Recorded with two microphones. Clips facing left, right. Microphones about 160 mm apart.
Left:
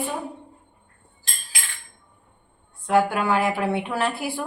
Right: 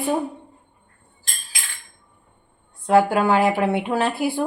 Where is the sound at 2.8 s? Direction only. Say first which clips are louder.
Right 4 dB; 30° right (ahead or behind).